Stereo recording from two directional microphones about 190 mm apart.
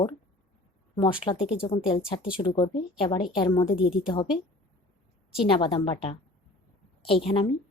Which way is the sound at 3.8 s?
5° right (ahead or behind).